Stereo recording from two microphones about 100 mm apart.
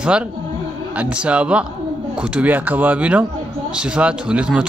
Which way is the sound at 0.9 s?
10° right (ahead or behind).